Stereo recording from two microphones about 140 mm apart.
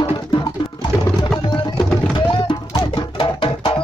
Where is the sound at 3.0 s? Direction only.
35° left (ahead or behind).